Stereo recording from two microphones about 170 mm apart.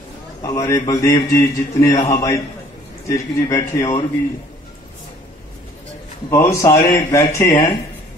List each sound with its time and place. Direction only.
0.4 s a man's voice: 15° left (ahead or behind)
6.3 s speech: 15° left (ahead or behind)